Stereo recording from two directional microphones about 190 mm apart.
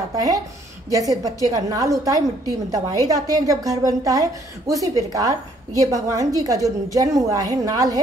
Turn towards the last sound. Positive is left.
turn(degrees=-20)  # may be behind; listen again after turning